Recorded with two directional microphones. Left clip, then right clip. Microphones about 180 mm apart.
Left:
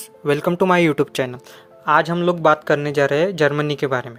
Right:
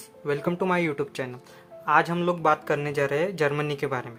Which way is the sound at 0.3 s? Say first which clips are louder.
Left 9 dB; 40° left (ahead or behind).